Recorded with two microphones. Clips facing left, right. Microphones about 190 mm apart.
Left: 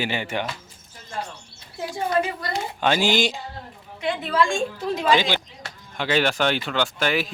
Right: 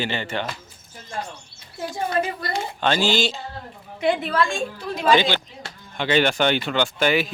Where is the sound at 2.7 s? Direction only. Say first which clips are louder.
Left 1 dB; 10° left (ahead or behind).